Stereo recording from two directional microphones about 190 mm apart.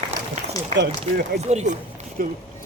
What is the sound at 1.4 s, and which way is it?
Speech, 35° right (ahead or behind).